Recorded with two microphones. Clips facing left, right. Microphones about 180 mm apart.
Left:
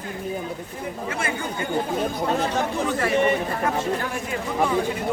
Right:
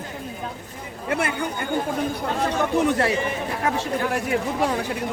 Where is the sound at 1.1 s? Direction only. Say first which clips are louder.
Right 6 dB; 65° right (ahead or behind).